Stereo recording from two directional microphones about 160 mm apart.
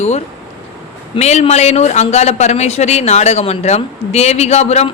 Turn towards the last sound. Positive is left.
turn(degrees=45)  # may be behind; listen again after turning